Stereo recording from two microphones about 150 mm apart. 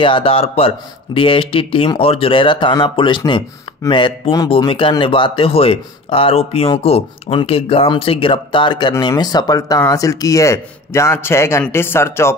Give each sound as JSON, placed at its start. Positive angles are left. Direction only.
{"t": 0.0, "sound": "speech", "side_deg": 35}